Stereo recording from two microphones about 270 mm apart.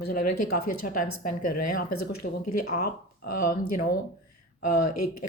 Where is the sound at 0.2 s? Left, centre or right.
Left.